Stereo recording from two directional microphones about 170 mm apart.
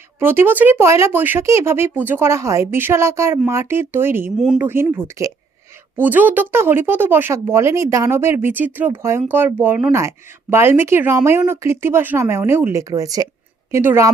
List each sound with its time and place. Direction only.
0.2 s a woman's voice: 15° right (ahead or behind)